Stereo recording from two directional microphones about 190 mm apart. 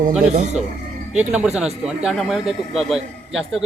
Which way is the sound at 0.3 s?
35° right (ahead or behind).